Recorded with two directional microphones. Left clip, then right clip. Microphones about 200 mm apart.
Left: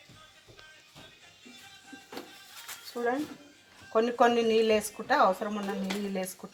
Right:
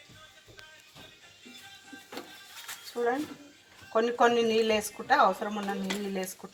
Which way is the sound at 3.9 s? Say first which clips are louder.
Even; 40° left (ahead or behind).